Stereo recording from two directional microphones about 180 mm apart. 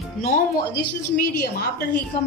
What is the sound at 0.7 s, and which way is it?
A woman's voice, 60° left (ahead or behind).